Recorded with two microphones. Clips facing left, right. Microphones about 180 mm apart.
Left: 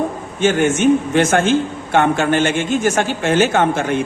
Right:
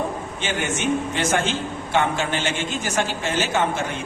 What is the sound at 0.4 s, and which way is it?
A man's voice, 50° left (ahead or behind).